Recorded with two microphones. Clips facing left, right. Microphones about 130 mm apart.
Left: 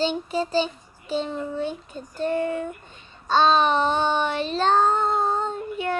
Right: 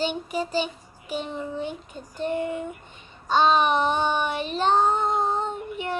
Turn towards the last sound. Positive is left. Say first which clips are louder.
# left 3 dB
turn(degrees=-15)  # may be behind; listen again after turning